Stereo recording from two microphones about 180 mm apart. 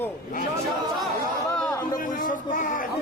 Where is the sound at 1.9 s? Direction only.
50° left (ahead or behind).